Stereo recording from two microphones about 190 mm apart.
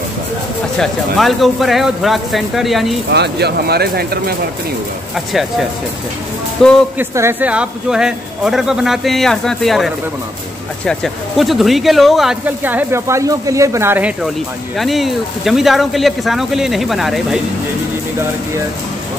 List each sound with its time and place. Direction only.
0.7 s speech: centre (ahead or behind)
3.1 s speech: 60° right (ahead or behind)
5.1 s speech: centre (ahead or behind)
6.6 s speech: 5° left (ahead or behind)
7.0 s speech: 10° right (ahead or behind)